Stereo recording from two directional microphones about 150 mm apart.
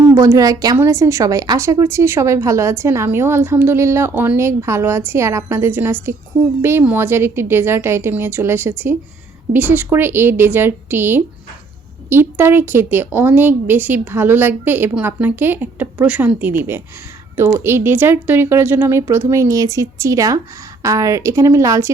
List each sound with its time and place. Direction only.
0.1 s a woman's voice: 20° right (ahead or behind)